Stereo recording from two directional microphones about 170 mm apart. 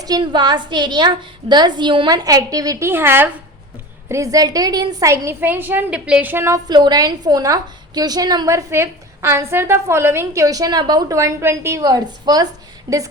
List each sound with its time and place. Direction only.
0.0 s a woman's voice: 25° right (ahead or behind)